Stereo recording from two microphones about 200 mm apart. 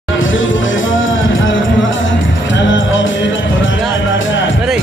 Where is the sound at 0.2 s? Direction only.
75° left (ahead or behind).